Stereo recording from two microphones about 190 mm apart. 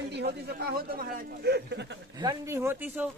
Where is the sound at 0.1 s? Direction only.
60° right (ahead or behind).